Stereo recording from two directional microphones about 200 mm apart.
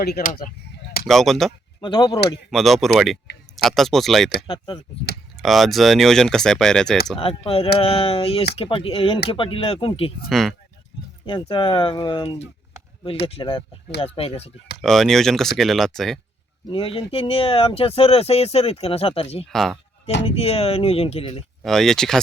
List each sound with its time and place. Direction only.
0.0 s speech: 45° left (ahead or behind)
1.0 s speech: centre (ahead or behind)
1.8 s speech: 25° left (ahead or behind)
2.5 s speech: centre (ahead or behind)
4.4 s speech: 25° left (ahead or behind)
5.4 s speech: centre (ahead or behind)
7.2 s speech: 30° left (ahead or behind)
10.2 s speech: centre (ahead or behind)
11.3 s speech: 25° left (ahead or behind)
14.8 s speech: centre (ahead or behind)
16.6 s speech: 25° left (ahead or behind)
19.5 s speech: centre (ahead or behind)
20.2 s speech: 30° left (ahead or behind)
21.6 s speech: centre (ahead or behind)